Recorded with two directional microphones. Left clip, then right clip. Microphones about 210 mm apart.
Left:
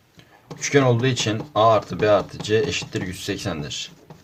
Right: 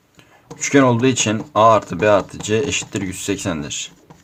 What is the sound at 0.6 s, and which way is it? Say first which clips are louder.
Speech: right 4 dB; 35° right (ahead or behind).